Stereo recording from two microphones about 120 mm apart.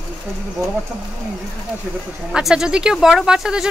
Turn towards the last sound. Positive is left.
turn(degrees=-5)  # may be behind; listen again after turning